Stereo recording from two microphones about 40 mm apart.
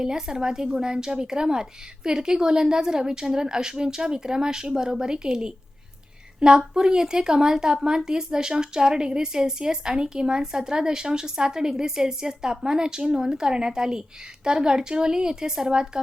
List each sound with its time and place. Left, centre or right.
0.0 s a woman's voice: centre